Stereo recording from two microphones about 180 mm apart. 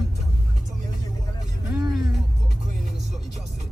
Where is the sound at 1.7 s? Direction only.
20° right (ahead or behind).